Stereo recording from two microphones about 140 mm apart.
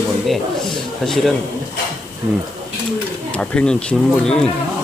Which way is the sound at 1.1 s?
Centre (ahead or behind).